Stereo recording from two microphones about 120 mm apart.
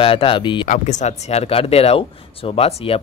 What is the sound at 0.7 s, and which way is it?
Speech, 80° left.